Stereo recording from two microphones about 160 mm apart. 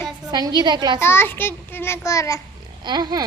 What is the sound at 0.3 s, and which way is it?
Speech, 25° right (ahead or behind).